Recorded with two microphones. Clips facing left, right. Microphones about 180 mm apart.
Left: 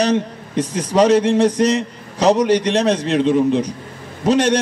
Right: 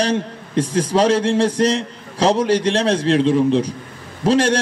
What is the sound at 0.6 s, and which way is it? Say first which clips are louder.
Speech: right 2 dB; 30° right (ahead or behind).